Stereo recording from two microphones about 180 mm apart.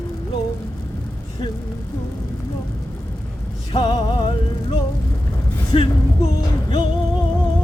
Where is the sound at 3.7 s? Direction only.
25° left (ahead or behind).